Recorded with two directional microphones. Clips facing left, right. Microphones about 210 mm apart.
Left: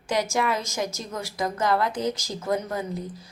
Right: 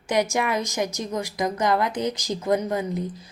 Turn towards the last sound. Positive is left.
turn(degrees=-20)  # may be behind; listen again after turning